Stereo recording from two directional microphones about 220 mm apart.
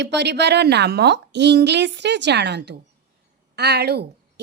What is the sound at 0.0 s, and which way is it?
A woman's voice, 50° right (ahead or behind).